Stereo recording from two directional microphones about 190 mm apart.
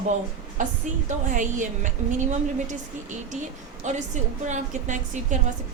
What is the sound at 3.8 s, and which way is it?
A woman's voice, 40° right (ahead or behind).